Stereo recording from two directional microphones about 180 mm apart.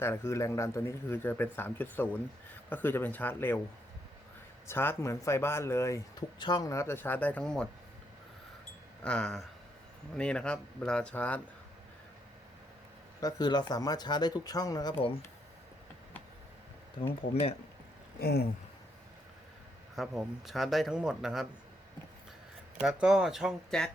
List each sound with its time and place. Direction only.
0.0 s speech: 15° left (ahead or behind)
4.6 s speech: 15° left (ahead or behind)
9.0 s speech: 5° left (ahead or behind)
13.1 s speech: 20° left (ahead or behind)
18.2 s speech: 60° left (ahead or behind)
20.0 s speech: centre (ahead or behind)
22.8 s speech: 5° right (ahead or behind)